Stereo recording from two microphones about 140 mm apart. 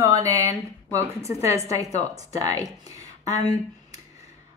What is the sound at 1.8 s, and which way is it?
Speech, 50° left (ahead or behind).